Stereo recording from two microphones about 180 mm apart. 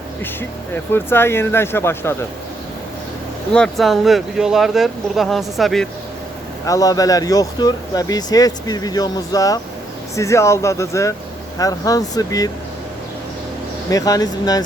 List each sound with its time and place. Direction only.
0.9 s speech: 15° left (ahead or behind)
3.5 s speech: 5° left (ahead or behind)
6.7 s speech: 20° left (ahead or behind)
13.9 s speech: 20° left (ahead or behind)